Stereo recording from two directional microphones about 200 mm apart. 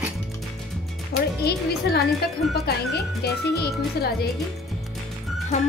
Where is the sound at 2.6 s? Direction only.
55° left (ahead or behind).